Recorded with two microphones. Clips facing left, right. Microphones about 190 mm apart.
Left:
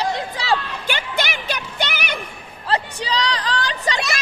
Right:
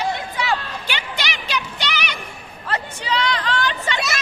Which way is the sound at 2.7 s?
35° left (ahead or behind).